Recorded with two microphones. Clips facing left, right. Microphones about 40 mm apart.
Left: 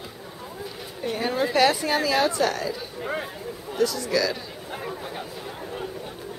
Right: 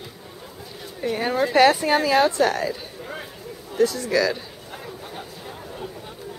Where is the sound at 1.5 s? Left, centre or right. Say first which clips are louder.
Right 5 dB; centre.